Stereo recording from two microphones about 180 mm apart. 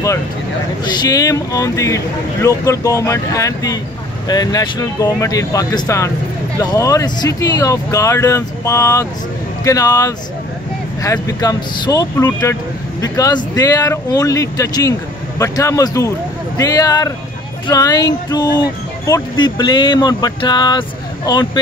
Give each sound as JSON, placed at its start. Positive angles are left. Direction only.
{"t": 0.8, "sound": "speech", "side_deg": 20}